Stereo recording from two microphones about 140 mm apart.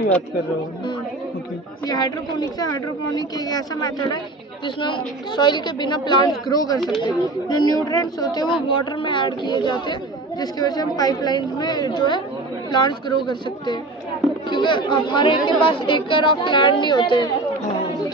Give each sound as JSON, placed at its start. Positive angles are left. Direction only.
{"t": 1.9, "sound": "a woman's voice", "side_deg": 30}